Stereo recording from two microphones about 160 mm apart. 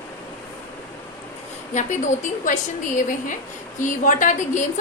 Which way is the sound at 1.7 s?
50° left (ahead or behind).